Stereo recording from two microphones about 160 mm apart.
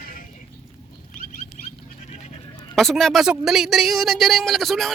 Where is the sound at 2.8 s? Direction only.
Centre (ahead or behind).